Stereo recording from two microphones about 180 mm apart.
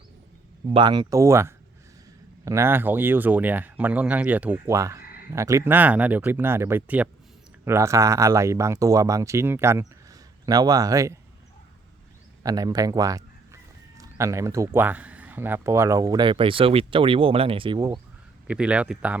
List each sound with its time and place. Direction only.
0.7 s speech: 25° right (ahead or behind)
12.4 s a man's voice: 20° right (ahead or behind)
18.4 s speech: 5° right (ahead or behind)